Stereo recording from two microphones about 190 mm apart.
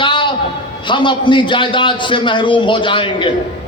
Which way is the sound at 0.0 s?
25° left (ahead or behind).